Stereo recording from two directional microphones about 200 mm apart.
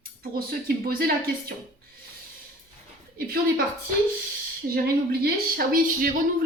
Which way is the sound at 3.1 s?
45° right (ahead or behind).